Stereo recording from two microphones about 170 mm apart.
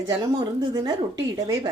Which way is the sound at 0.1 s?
25° right (ahead or behind).